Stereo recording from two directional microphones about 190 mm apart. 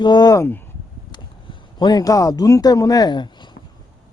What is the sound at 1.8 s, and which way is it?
Speech, 20° left (ahead or behind).